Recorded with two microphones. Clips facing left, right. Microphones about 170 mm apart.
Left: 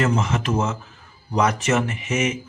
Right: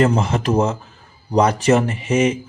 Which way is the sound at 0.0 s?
35° right (ahead or behind).